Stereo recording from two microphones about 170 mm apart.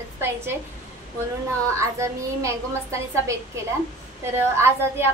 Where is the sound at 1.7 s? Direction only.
15° right (ahead or behind).